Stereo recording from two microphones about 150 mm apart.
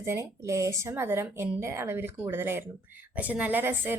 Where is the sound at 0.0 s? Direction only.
15° right (ahead or behind).